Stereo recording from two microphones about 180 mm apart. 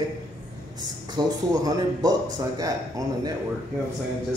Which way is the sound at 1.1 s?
20° right (ahead or behind).